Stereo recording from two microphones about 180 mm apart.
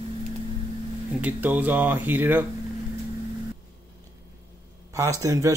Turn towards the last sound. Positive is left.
turn(degrees=-20)  # may be behind; listen again after turning